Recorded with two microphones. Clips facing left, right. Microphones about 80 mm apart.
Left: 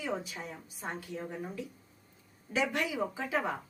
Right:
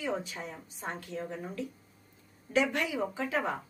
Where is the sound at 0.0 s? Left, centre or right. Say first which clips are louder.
Right 2 dB; centre.